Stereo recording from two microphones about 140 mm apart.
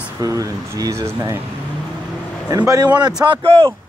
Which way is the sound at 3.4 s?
40° right (ahead or behind).